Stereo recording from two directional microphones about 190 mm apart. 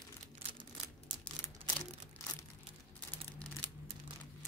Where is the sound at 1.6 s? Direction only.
25° right (ahead or behind).